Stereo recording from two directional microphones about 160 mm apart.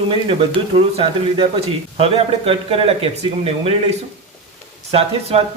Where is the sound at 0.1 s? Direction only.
35° right (ahead or behind).